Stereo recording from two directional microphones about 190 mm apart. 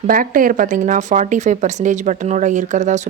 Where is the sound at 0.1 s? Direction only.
45° right (ahead or behind).